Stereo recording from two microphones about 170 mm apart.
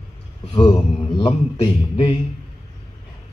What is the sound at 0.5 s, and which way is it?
Speech, 30° left (ahead or behind).